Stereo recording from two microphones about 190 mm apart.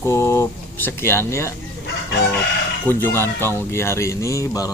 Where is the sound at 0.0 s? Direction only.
15° left (ahead or behind).